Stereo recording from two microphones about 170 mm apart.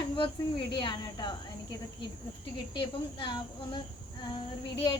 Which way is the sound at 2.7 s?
25° left (ahead or behind).